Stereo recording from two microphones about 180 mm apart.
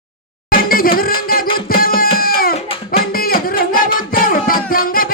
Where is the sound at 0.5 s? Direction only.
55° left (ahead or behind).